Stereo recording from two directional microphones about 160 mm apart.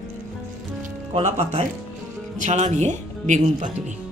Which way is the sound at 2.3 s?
50° right (ahead or behind).